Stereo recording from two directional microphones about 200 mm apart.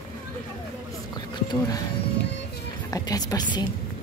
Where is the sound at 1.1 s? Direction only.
20° left (ahead or behind).